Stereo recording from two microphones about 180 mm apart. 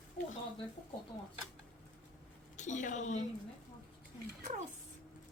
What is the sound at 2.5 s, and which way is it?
Speech, 40° left (ahead or behind).